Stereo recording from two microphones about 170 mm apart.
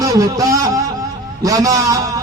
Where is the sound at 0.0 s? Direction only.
20° right (ahead or behind).